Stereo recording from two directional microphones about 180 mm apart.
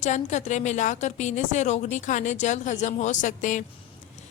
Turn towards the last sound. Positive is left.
turn(degrees=45)  # may be behind; listen again after turning